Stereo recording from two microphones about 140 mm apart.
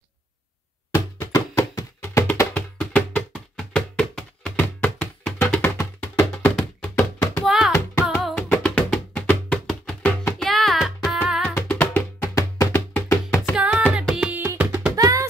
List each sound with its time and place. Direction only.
0.9 s music: 20° left (ahead or behind)
2.2 s music: 10° left (ahead or behind)
7.0 s a sound: 15° left (ahead or behind)
7.4 s music: 5° right (ahead or behind)
11.5 s music: 10° left (ahead or behind)
13.6 s music: 5° right (ahead or behind)
15.0 s music: 25° right (ahead or behind)